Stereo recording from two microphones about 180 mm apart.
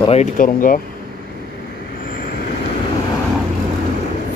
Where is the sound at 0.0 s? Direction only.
35° left (ahead or behind).